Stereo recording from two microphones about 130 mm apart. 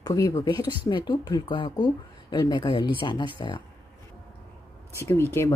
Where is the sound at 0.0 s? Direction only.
25° left (ahead or behind).